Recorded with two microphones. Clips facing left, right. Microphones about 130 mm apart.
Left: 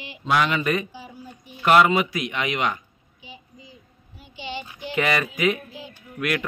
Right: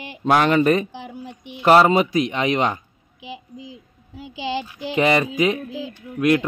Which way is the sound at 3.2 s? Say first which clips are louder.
Right 10 dB; 90° right.